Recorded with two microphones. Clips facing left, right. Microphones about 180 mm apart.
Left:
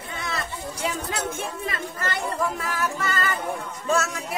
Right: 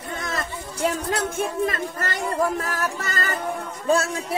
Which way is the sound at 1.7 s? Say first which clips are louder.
Right 3 dB; 40° right (ahead or behind).